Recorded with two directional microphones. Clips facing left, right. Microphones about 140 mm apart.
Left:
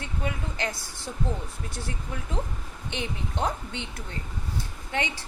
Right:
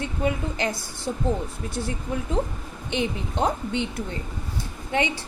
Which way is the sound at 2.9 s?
20° right (ahead or behind).